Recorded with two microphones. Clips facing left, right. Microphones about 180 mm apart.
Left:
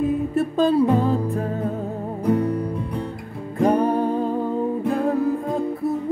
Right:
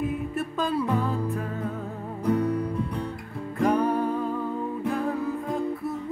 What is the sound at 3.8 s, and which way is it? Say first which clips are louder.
Music: left 4 dB; 30° left (ahead or behind).